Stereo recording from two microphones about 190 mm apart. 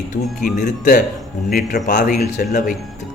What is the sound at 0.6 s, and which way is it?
A man's voice, 45° left (ahead or behind).